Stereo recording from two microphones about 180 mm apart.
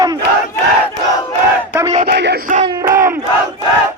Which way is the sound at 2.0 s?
65° right (ahead or behind).